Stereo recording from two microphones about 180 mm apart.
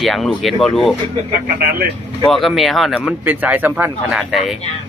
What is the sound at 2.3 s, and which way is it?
Speech, centre (ahead or behind).